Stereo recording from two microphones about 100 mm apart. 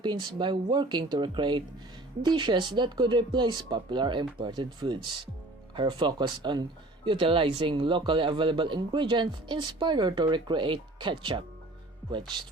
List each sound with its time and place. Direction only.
0.0 s speech: 50° right (ahead or behind)